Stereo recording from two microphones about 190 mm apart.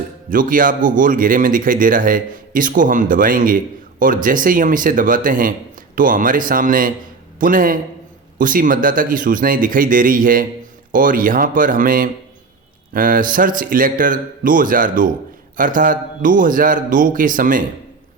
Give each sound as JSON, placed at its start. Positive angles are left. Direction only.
{"t": 0.3, "sound": "a man's voice", "side_deg": -45}